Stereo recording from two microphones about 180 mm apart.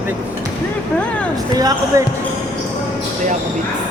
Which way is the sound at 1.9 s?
20° right (ahead or behind).